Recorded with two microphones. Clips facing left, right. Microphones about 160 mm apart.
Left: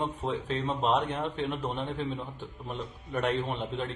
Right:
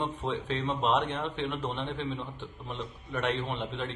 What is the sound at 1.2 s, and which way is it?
Speech, 40° left (ahead or behind).